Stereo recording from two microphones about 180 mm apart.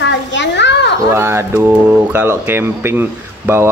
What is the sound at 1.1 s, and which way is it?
Speech, 15° right (ahead or behind).